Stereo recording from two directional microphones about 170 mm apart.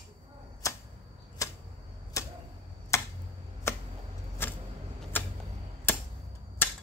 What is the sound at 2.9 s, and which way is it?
Finger snapping, 15° left (ahead or behind).